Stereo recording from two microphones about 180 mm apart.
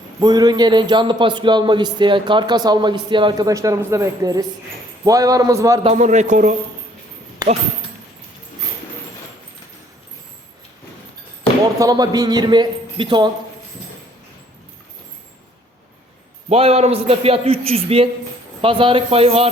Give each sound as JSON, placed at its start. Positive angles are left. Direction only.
{"t": 0.2, "sound": "a man's voice", "side_deg": -20}
{"t": 5.8, "sound": "a man's voice", "side_deg": -40}
{"t": 11.8, "sound": "a man's voice", "side_deg": -20}
{"t": 16.5, "sound": "a man's voice", "side_deg": -35}